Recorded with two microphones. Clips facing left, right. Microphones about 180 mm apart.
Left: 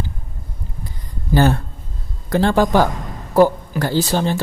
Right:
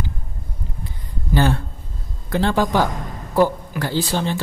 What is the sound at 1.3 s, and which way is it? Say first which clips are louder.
A man's voice: left 3 dB; 45° left (ahead or behind).